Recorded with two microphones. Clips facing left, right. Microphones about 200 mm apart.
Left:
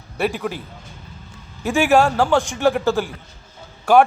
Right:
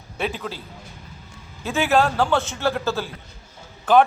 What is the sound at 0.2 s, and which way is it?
Speech, 10° left (ahead or behind).